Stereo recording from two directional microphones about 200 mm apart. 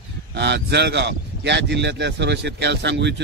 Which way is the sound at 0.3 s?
60° right (ahead or behind).